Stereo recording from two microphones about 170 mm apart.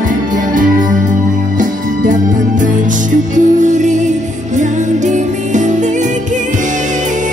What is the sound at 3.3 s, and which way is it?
Music, 45° right (ahead or behind).